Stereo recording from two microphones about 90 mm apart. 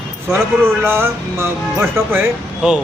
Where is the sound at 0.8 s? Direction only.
25° right (ahead or behind).